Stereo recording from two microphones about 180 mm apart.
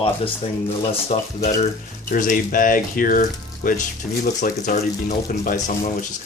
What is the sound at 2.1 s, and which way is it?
Speech, 50° left (ahead or behind).